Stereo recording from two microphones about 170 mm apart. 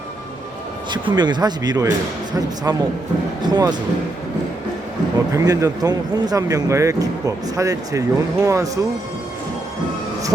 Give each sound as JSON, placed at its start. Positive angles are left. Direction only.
{"t": 0.9, "sound": "speech", "side_deg": -25}
{"t": 5.3, "sound": "speech", "side_deg": -20}